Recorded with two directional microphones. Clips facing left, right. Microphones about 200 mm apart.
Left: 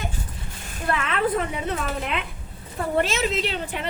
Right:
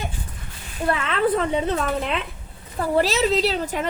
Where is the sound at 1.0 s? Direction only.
30° right (ahead or behind).